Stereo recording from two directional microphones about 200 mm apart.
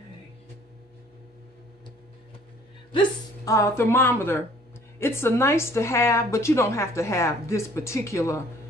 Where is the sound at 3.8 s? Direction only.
10° left (ahead or behind).